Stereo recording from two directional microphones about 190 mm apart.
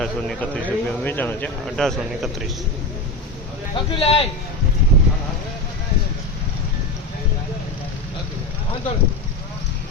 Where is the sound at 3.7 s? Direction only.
30° left (ahead or behind).